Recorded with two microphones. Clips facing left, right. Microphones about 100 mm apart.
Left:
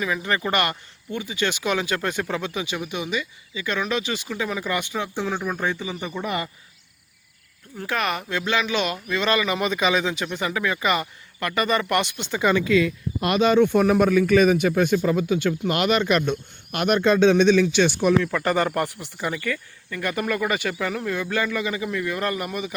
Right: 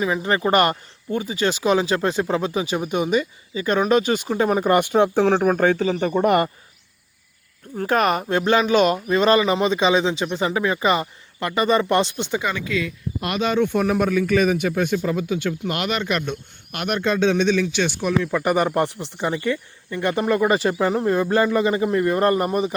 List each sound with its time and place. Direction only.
0.0 s speech: 30° right (ahead or behind); by 5.3 s 55° right (ahead or behind)
5.3 s speech: 65° right (ahead or behind)
6.1 s speech: 55° right (ahead or behind)
7.8 s speech: 40° right (ahead or behind)
12.4 s speech: 5° right (ahead or behind)
13.2 s a man's voice: 10° left (ahead or behind)
18.2 s speech: 15° right (ahead or behind); by 22.7 s 35° right (ahead or behind)